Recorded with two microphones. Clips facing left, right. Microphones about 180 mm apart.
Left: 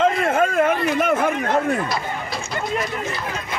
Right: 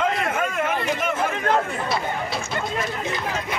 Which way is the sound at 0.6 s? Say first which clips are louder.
Left 6 dB; 55° left (ahead or behind).